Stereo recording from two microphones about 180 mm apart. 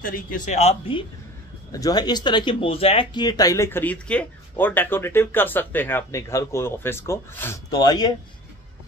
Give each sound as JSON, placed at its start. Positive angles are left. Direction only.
{"t": 0.0, "sound": "speech", "side_deg": 50}
{"t": 0.6, "sound": "speech", "side_deg": 35}
{"t": 1.7, "sound": "speech", "side_deg": 20}